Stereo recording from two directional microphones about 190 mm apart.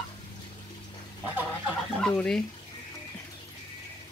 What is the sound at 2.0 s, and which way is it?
Speech, 5° left (ahead or behind).